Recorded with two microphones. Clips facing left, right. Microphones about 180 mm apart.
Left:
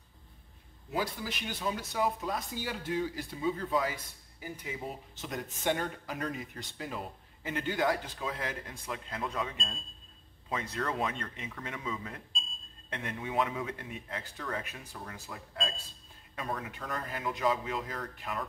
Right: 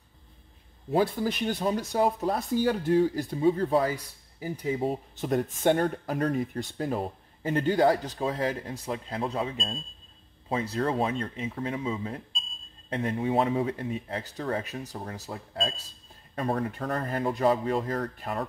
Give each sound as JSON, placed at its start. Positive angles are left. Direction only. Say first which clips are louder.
{"t": 0.8, "sound": "speech", "louder": "right 9 dB", "side_deg": -45}
{"t": 5.2, "sound": "speech", "louder": "right 9 dB", "side_deg": -50}